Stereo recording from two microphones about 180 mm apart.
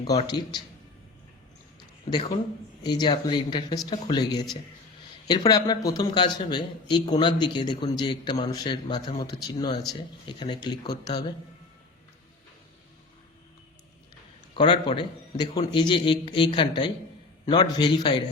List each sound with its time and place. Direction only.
0.3 s a man's voice: 25° left (ahead or behind)
2.8 s a man's voice: 25° left (ahead or behind)
14.5 s a man's voice: 30° left (ahead or behind)